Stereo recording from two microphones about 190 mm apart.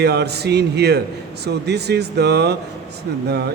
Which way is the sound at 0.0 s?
60° right (ahead or behind).